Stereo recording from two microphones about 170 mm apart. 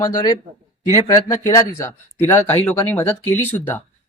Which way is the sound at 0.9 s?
20° left (ahead or behind).